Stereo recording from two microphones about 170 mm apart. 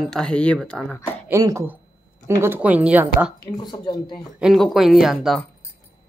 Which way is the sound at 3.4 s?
25° left (ahead or behind).